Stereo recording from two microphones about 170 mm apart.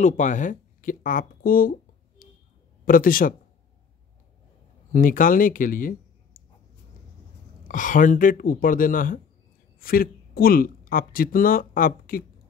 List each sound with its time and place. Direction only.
0.0 s speech: 45° left (ahead or behind)
4.9 s speech: 50° left (ahead or behind)
7.6 s speech: 50° left (ahead or behind)